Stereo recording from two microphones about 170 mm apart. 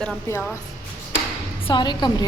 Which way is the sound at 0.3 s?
15° left (ahead or behind).